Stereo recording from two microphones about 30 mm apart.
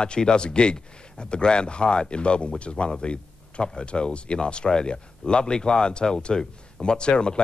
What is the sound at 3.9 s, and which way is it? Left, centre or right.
Speech, left.